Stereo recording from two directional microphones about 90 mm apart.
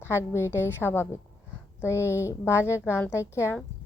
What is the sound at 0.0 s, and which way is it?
A woman's voice, 30° left (ahead or behind).